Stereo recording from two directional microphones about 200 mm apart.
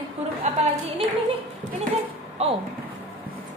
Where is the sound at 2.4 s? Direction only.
30° right (ahead or behind).